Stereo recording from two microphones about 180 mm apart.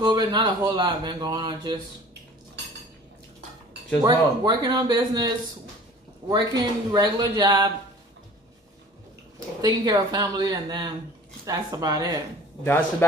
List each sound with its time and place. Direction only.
0.0 s speech: 25° right (ahead or behind)
4.0 s speech: 20° right (ahead or behind)
9.6 s speech: 20° right (ahead or behind)